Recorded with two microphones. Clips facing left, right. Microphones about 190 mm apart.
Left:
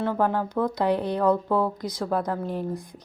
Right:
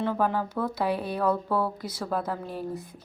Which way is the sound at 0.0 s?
15° left (ahead or behind).